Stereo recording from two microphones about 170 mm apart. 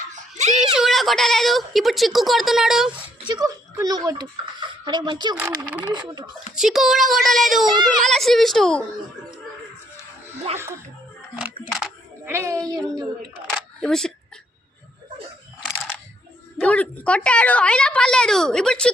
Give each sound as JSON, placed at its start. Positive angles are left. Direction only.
{"t": 0.1, "sound": "a sound", "side_deg": -45}
{"t": 0.8, "sound": "a woman's voice", "side_deg": 0}
{"t": 2.9, "sound": "speech", "side_deg": -25}
{"t": 5.4, "sound": "a woman's voice", "side_deg": -10}
{"t": 7.7, "sound": "a child's voice", "side_deg": -25}
{"t": 8.0, "sound": "a woman's voice", "side_deg": 0}
{"t": 12.2, "sound": "speech", "side_deg": -15}
{"t": 12.5, "sound": "a woman's voice", "side_deg": 5}
{"t": 13.5, "sound": "camera", "side_deg": 5}
{"t": 15.6, "sound": "a sound", "side_deg": 10}
{"t": 16.6, "sound": "a woman's voice", "side_deg": 10}